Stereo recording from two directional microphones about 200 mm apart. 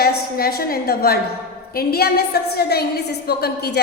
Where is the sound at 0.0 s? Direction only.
50° left (ahead or behind).